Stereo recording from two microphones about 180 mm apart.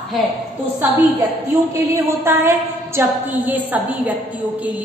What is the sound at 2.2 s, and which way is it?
A woman's voice, 15° right (ahead or behind).